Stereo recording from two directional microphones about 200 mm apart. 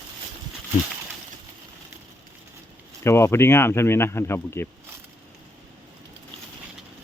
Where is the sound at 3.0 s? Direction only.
15° left (ahead or behind).